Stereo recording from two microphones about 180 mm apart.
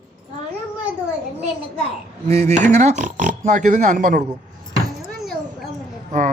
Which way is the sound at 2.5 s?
40° right (ahead or behind).